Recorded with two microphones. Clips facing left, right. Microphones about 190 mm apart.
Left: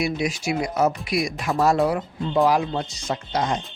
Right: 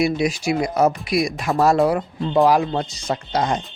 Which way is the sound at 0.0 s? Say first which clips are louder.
Right 5 dB; 35° right (ahead or behind).